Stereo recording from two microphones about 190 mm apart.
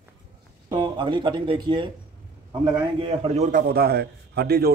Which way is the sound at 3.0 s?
35° right (ahead or behind).